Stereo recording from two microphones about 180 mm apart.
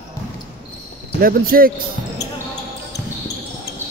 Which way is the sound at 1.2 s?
55° right (ahead or behind).